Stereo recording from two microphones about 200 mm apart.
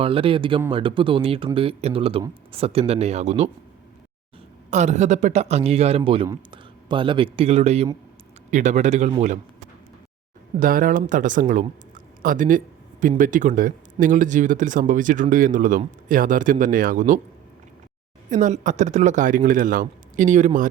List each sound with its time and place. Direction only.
0.0 s speech: 25° right (ahead or behind)
4.7 s speech: 35° right (ahead or behind)
10.6 s speech: 45° right (ahead or behind)
18.3 s speech: 40° right (ahead or behind)